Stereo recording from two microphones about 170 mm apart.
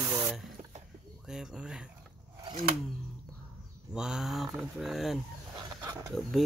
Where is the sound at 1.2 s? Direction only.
5° right (ahead or behind).